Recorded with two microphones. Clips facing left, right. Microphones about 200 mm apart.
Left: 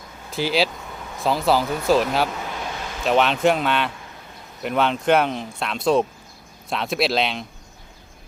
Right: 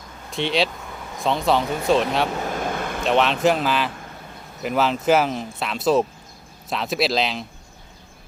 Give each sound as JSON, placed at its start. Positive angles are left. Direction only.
{"t": 0.3, "sound": "speech", "side_deg": 0}
{"t": 2.5, "sound": "vehicle", "side_deg": -50}
{"t": 3.0, "sound": "speech", "side_deg": 0}